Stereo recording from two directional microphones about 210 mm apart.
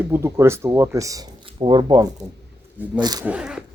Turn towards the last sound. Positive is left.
turn(degrees=-5)  # may be behind; listen again after turning